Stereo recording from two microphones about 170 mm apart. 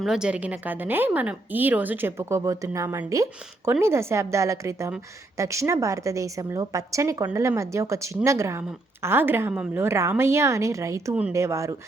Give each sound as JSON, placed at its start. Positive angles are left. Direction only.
{"t": 0.0, "sound": "a woman's voice", "side_deg": -5}